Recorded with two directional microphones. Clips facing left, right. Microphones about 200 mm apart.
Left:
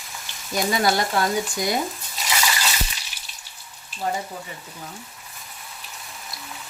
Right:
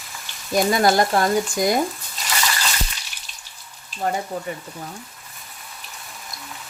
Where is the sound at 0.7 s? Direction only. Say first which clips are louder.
Right 3 dB; 50° right (ahead or behind).